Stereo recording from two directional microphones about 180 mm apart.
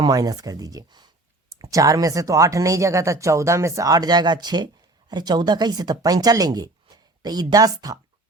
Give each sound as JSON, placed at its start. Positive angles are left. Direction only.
{"t": 0.0, "sound": "speech", "side_deg": -20}